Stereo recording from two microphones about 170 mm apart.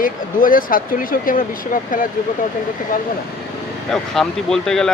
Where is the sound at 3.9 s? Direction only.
5° left (ahead or behind).